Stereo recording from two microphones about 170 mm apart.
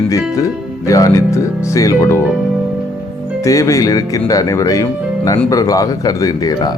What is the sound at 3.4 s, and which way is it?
Speech, 20° left (ahead or behind).